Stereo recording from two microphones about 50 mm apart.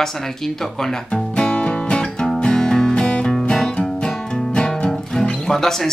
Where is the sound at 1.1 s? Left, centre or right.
Centre.